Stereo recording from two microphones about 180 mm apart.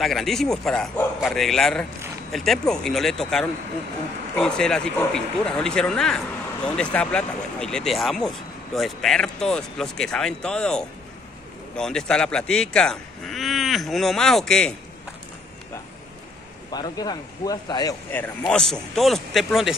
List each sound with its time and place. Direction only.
0.0 s speech: centre (ahead or behind)
16.7 s speech: 20° left (ahead or behind)
18.1 s speech: 10° left (ahead or behind)